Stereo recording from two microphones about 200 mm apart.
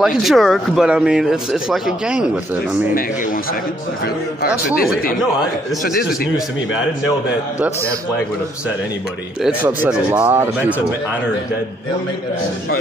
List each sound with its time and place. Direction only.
0.0 s speech: centre (ahead or behind)
4.0 s a man's voice: 50° left (ahead or behind)
6.0 s speech: 5° right (ahead or behind)
9.4 s speech: 5° right (ahead or behind)